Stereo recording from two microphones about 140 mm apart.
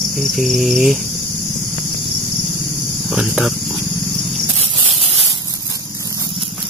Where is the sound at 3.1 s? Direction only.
5° right (ahead or behind).